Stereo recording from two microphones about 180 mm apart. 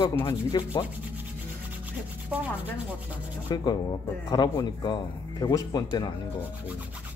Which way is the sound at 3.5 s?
25° left (ahead or behind).